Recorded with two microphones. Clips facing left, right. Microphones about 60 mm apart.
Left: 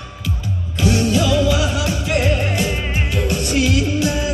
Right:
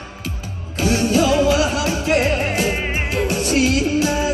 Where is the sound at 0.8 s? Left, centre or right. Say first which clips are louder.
Right 1 dB; right.